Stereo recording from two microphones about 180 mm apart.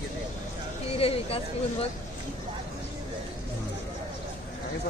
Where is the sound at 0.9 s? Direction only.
30° left (ahead or behind).